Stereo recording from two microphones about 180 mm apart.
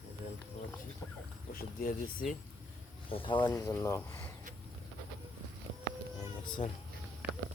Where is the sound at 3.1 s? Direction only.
30° left (ahead or behind).